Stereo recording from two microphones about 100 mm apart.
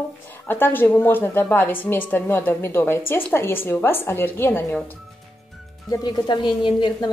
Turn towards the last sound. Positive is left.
turn(degrees=55)  # may be behind; listen again after turning